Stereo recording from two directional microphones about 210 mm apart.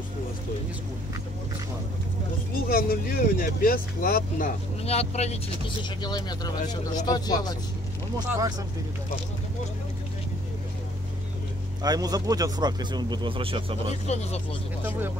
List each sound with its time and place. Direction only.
2.7 s speech: 45° left (ahead or behind)
5.9 s speech: 20° left (ahead or behind)
8.3 s speech: 15° right (ahead or behind)
11.8 s speech: 20° right (ahead or behind)
14.0 s speech: 30° left (ahead or behind)